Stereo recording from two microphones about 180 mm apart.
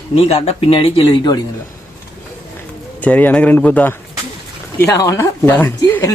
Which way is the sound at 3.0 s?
10° left (ahead or behind).